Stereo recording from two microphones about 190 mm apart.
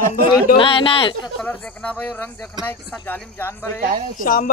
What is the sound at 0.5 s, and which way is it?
Speech, 30° left (ahead or behind).